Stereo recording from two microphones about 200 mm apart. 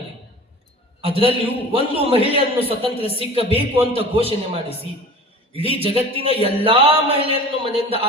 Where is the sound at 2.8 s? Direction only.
30° left (ahead or behind).